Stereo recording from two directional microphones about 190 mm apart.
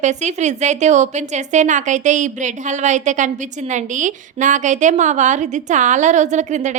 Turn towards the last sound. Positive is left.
turn(degrees=-40)  # may be behind; listen again after turning